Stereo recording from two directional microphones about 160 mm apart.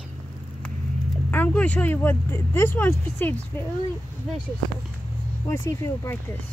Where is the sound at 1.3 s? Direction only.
10° left (ahead or behind).